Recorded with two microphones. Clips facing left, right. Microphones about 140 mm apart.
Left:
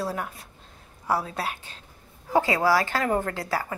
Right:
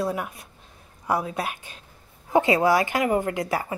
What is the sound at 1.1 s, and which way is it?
A woman's voice, 20° right (ahead or behind).